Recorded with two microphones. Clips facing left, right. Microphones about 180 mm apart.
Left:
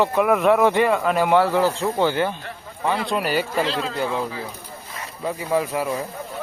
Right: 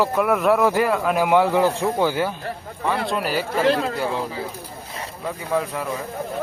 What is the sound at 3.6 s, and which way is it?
Speech, 60° right (ahead or behind).